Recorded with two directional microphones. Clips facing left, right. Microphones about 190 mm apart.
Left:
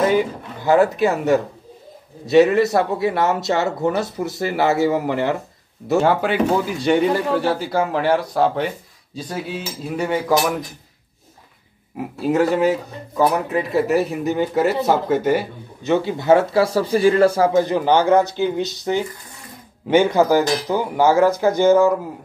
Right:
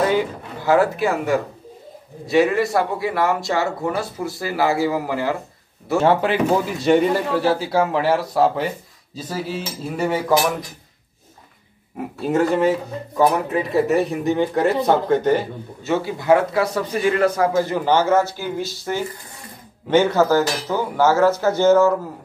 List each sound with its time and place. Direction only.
0.7 s speech: 20° left (ahead or behind)
5.9 s speech: centre (ahead or behind)
12.2 s speech: centre (ahead or behind)
15.9 s speech: 25° left (ahead or behind)
17.6 s speech: 15° left (ahead or behind)